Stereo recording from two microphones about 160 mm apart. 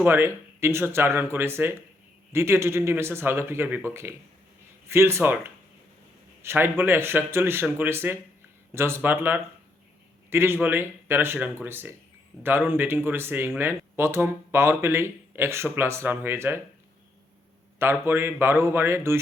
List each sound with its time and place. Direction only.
0.0 s speech: 15° right (ahead or behind)
17.7 s speech: 15° right (ahead or behind)